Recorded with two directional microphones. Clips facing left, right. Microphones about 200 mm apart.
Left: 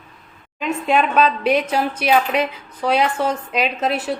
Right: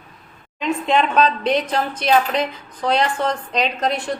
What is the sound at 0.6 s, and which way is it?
A woman's voice, 10° left (ahead or behind).